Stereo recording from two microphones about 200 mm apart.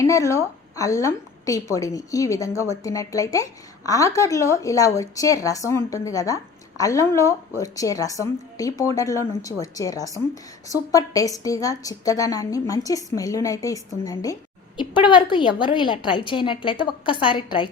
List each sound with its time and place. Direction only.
0.0 s a woman's voice: 15° left (ahead or behind)